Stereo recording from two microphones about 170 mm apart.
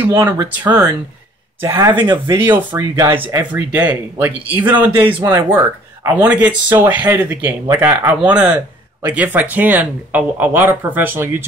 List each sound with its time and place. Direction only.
0.0 s speech: 20° right (ahead or behind)
2.3 s speech: 10° right (ahead or behind)